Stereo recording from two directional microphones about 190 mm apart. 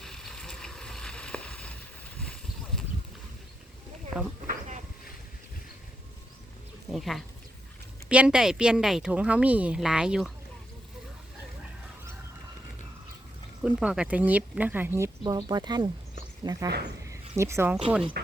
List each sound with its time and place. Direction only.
0.0 s vehicle: centre (ahead or behind)
4.1 s speech: centre (ahead or behind)
4.4 s a sound: 40° right (ahead or behind)
6.9 s a woman's voice: centre (ahead or behind)
13.6 s speech: 5° right (ahead or behind)
17.1 s a sound: 15° right (ahead or behind)